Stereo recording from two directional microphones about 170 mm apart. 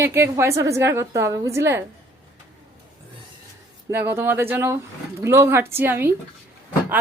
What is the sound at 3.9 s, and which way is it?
A woman's voice, 15° right (ahead or behind).